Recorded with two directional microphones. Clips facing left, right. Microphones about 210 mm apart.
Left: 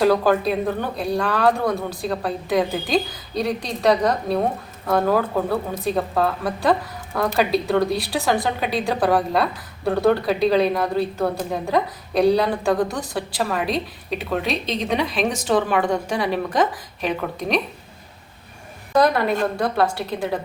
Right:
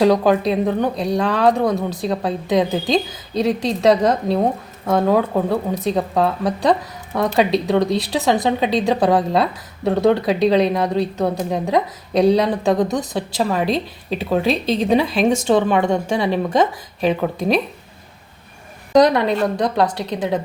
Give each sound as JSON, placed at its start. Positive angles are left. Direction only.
{"t": 0.0, "sound": "speech", "side_deg": -20}
{"t": 19.5, "sound": "speech", "side_deg": -20}